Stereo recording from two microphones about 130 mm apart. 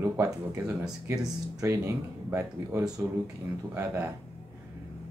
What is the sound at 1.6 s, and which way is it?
Speech, 25° right (ahead or behind).